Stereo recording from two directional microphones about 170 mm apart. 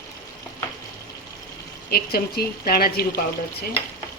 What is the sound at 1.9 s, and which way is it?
A woman's voice, 65° left (ahead or behind).